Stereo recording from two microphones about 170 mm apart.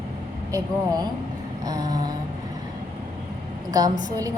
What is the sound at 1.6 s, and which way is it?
Speech, 20° right (ahead or behind).